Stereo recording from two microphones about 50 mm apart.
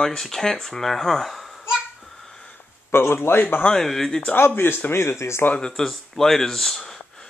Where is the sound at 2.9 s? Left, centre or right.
Left.